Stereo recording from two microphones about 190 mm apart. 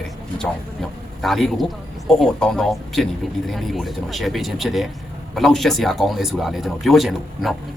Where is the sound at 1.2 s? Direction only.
Centre (ahead or behind).